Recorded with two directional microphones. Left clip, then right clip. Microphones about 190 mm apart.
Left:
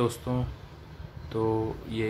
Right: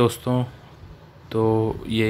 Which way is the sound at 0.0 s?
30° right (ahead or behind).